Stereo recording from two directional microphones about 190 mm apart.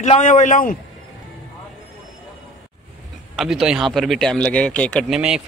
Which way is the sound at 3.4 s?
Centre (ahead or behind).